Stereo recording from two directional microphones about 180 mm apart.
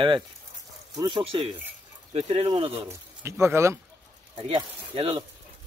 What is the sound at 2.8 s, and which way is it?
Speech, 15° right (ahead or behind).